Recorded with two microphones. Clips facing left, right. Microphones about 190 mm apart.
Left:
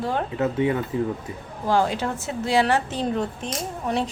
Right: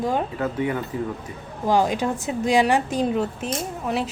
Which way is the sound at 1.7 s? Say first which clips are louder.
Right 2 dB; 15° right (ahead or behind).